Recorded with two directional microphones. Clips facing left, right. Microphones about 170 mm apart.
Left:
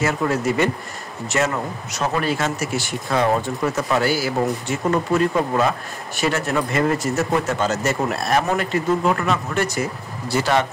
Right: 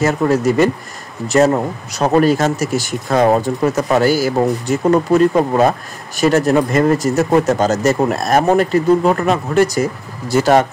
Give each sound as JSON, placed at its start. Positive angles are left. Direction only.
{"t": 0.0, "sound": "speech", "side_deg": -40}